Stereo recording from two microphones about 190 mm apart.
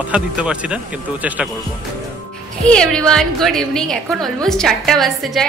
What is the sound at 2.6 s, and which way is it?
Speech, 5° left (ahead or behind).